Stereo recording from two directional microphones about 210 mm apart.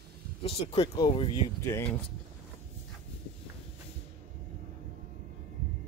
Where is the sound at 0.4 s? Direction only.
25° left (ahead or behind).